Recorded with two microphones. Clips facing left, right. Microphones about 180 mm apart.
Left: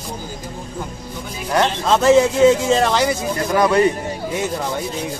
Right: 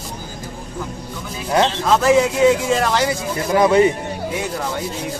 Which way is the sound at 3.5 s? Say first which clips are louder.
Right 2 dB; 20° right (ahead or behind).